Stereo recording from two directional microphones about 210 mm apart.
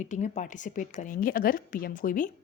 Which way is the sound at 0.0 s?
35° left (ahead or behind).